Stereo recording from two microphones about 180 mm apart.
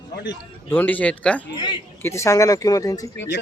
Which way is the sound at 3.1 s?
80° left.